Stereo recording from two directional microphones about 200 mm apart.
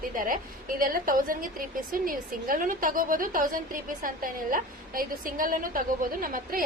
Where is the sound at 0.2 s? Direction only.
45° right (ahead or behind).